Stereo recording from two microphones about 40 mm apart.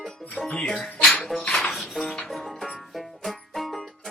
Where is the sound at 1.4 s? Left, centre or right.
Left.